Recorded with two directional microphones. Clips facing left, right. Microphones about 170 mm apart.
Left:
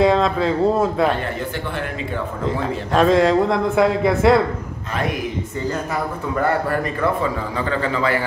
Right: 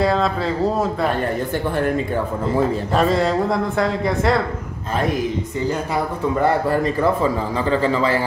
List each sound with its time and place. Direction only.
0.0 s speech: centre (ahead or behind)
2.9 s speech: centre (ahead or behind)
7.5 s a man's voice: 30° right (ahead or behind)